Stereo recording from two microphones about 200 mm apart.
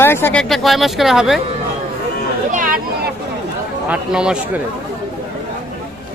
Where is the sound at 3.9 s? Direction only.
5° right (ahead or behind).